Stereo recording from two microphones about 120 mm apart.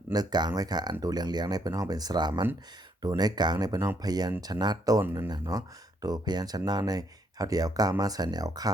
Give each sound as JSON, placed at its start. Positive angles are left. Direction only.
{"t": 0.1, "sound": "speech", "side_deg": -35}